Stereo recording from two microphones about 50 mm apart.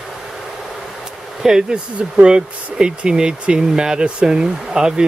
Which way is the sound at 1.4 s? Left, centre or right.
Centre.